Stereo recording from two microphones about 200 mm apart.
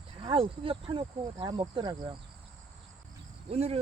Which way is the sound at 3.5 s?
30° right (ahead or behind).